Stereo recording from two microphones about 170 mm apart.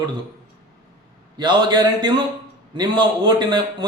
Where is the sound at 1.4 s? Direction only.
25° right (ahead or behind).